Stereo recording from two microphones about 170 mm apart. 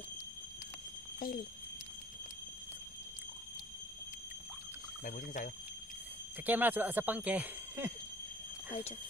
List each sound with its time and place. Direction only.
1.2 s speech: 55° left (ahead or behind)
5.0 s speech: 50° left (ahead or behind)
6.4 s speech: 10° right (ahead or behind)